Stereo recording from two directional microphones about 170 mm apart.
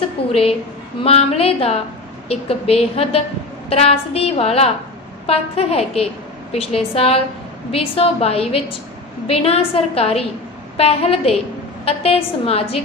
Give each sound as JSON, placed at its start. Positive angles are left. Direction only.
{"t": 1.0, "sound": "a woman's voice", "side_deg": 35}